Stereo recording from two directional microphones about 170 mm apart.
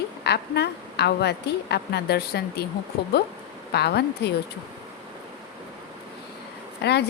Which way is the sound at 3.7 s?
75° left (ahead or behind).